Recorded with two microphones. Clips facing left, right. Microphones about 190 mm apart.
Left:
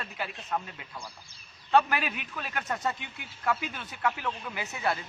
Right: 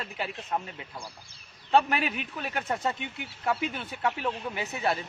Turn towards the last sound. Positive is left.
turn(degrees=-30)  # may be behind; listen again after turning